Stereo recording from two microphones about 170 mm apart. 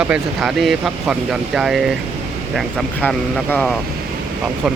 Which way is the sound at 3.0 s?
10° left (ahead or behind).